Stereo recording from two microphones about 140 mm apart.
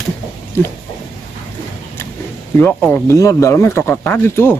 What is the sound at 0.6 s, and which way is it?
Speech, 15° left (ahead or behind).